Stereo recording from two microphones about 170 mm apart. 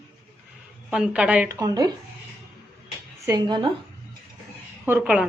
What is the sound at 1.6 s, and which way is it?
Speech, 20° right (ahead or behind).